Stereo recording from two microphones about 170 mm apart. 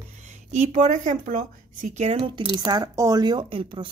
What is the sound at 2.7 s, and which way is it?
Speech, 20° right (ahead or behind).